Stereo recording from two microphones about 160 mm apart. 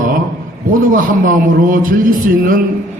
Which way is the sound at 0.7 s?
60° right (ahead or behind).